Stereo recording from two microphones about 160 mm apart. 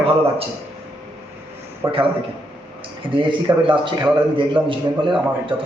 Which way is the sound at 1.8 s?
15° right (ahead or behind).